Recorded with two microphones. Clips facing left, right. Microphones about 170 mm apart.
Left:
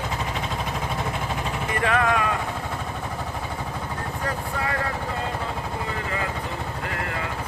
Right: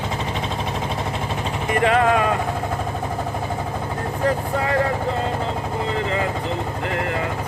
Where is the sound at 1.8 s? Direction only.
30° right (ahead or behind).